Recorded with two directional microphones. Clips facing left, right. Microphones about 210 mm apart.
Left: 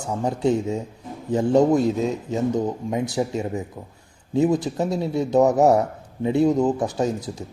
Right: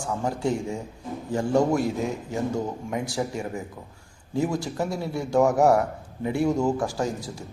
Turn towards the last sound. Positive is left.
turn(degrees=20)  # may be behind; listen again after turning